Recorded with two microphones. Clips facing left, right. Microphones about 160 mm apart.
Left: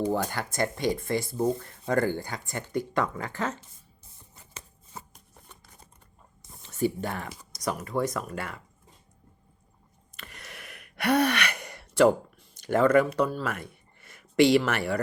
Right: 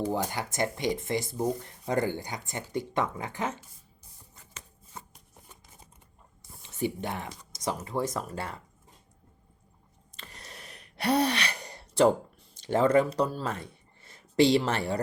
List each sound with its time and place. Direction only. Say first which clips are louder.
0.1 s speech: left 2 dB; 15° right (ahead or behind)
6.7 s speech: left 3 dB; 20° right (ahead or behind)
10.2 s a sound: left 2 dB; 30° right (ahead or behind)
10.9 s gasp: left 2 dB; 30° right (ahead or behind)
12.4 s speech: left 2 dB; 25° right (ahead or behind)